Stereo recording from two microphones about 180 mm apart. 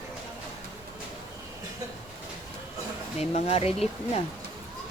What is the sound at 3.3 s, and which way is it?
Speech, 35° left (ahead or behind).